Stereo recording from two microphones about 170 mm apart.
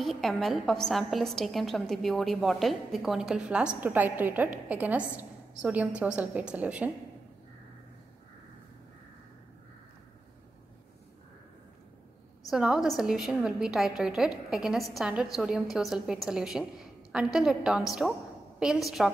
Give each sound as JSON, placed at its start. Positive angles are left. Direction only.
{"t": 0.0, "sound": "a woman's voice", "side_deg": 0}
{"t": 12.4, "sound": "a woman's voice", "side_deg": -5}